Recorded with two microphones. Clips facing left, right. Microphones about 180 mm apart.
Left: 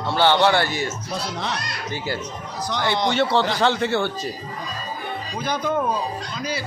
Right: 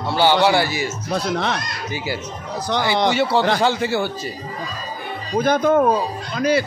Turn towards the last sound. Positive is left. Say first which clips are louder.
# right 9 dB
turn(degrees=-60)  # may be behind; listen again after turning